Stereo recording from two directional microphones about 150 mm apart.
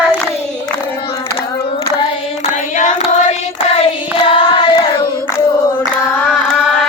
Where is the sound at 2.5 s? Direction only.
55° left (ahead or behind).